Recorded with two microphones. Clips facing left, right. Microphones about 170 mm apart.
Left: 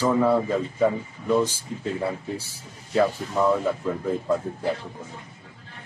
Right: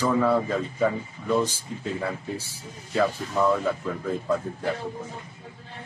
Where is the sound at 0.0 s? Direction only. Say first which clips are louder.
Left 2 dB; 15° left (ahead or behind).